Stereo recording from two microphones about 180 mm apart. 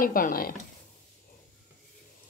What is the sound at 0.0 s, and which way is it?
Speech, 50° left (ahead or behind).